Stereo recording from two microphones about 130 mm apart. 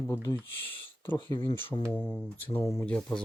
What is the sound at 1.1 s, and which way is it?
Speech, 35° left (ahead or behind).